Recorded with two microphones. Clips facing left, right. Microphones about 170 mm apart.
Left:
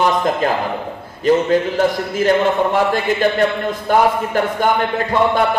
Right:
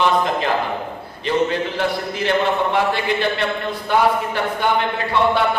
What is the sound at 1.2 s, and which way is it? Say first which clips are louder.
A man's voice: left 6 dB; 45° left (ahead or behind).